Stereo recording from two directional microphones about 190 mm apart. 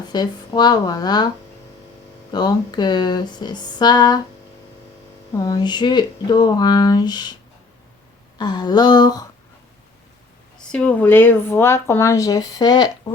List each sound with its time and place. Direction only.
0.1 s speech: 20° left (ahead or behind)
2.3 s speech: 20° left (ahead or behind)
5.3 s speech: 20° left (ahead or behind)
8.4 s speech: 20° left (ahead or behind)
10.6 s speech: 5° left (ahead or behind); by 12.9 s 20° left (ahead or behind)